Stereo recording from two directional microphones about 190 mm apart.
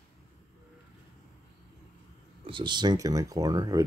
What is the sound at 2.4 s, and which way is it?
Speech, 25° right (ahead or behind).